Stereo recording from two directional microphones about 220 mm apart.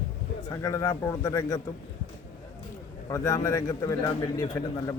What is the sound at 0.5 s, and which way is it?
A man's voice, 15° left (ahead or behind).